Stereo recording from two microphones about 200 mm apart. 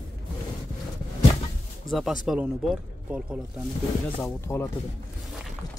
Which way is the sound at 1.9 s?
Centre (ahead or behind).